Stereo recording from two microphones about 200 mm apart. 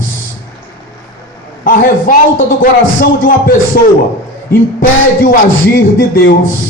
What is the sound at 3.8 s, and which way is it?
Speech, 50° left (ahead or behind).